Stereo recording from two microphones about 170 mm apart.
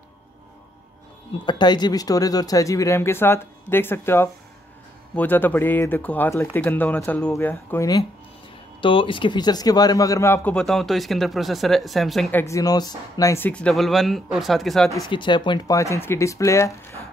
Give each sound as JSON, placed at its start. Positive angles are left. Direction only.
{"t": 1.4, "sound": "speech", "side_deg": 25}
{"t": 8.8, "sound": "speech", "side_deg": 30}
{"t": 12.3, "sound": "speech", "side_deg": 15}
{"t": 15.0, "sound": "speech", "side_deg": 30}